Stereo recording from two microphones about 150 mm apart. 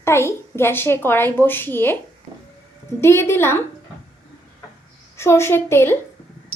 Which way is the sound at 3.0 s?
15° left (ahead or behind).